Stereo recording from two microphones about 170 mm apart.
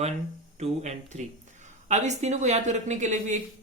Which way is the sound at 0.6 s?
40° right (ahead or behind).